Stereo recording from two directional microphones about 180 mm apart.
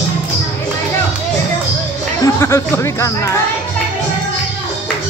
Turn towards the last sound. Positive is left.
turn(degrees=15)  # may be behind; listen again after turning